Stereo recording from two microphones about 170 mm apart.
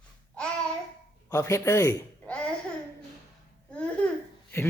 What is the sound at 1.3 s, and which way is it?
A man's voice, 15° left (ahead or behind).